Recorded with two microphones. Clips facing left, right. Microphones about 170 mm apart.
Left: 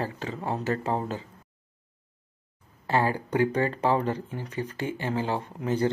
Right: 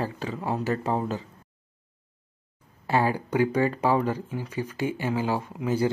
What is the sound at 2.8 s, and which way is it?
Speech, 10° right (ahead or behind).